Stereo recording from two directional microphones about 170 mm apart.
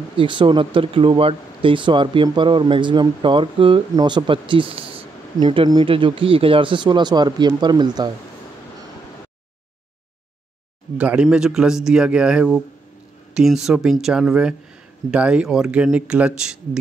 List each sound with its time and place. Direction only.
0.2 s speech: 30° right (ahead or behind)
11.0 s a man's voice: 5° right (ahead or behind)